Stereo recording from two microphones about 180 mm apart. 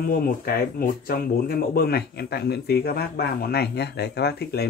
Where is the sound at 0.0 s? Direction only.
55° left (ahead or behind).